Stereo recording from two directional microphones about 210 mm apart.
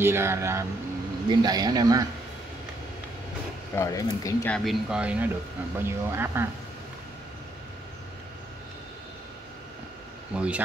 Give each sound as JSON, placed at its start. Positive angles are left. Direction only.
{"t": 0.0, "sound": "speech", "side_deg": -10}
{"t": 3.7, "sound": "speech", "side_deg": 15}
{"t": 4.6, "sound": "speech", "side_deg": -5}
{"t": 10.3, "sound": "speech", "side_deg": -5}